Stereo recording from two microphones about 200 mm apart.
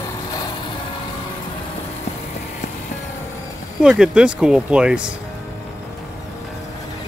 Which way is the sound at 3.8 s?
5° right (ahead or behind).